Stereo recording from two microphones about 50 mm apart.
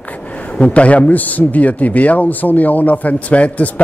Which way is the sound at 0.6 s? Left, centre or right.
Left.